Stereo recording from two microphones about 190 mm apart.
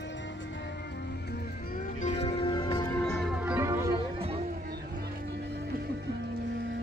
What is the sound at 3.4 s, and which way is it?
Music, 10° right (ahead or behind).